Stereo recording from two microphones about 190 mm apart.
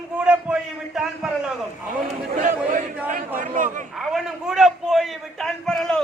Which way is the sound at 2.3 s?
40° right (ahead or behind).